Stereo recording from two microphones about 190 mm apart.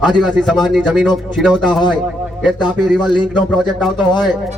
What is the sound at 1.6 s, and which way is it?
Speech, 25° left (ahead or behind).